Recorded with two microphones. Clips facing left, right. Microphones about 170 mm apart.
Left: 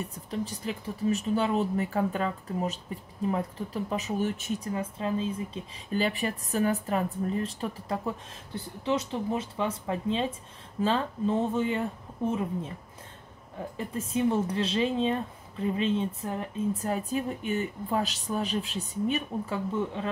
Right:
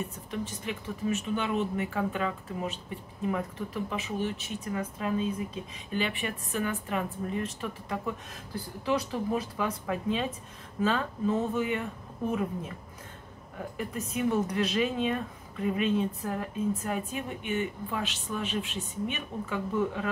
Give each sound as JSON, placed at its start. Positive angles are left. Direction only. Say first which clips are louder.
{"t": 0.0, "sound": "speech", "louder": "left 1 dB", "side_deg": 35}
{"t": 4.7, "sound": "a woman's voice", "louder": "right 2 dB", "side_deg": 30}
{"t": 13.7, "sound": "a woman's voice", "louder": "left 3 dB", "side_deg": 30}
{"t": 16.9, "sound": "speech", "louder": "left 4 dB", "side_deg": 35}